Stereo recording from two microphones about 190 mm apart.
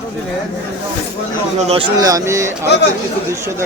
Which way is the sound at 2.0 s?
15° right (ahead or behind).